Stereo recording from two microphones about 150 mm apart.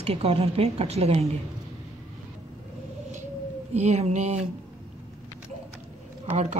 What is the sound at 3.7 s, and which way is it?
Speech, 50° right (ahead or behind).